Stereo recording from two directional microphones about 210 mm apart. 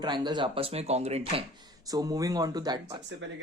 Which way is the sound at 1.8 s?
15° right (ahead or behind).